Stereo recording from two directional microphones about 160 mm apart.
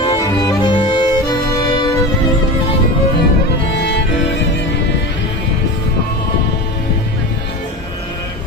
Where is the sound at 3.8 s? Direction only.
90° left.